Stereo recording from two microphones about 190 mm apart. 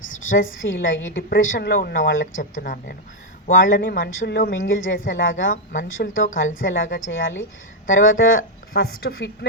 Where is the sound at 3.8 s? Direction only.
50° left (ahead or behind).